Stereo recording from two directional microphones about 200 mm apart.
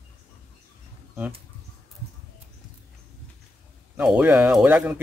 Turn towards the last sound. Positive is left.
turn(degrees=-10)  # may be behind; listen again after turning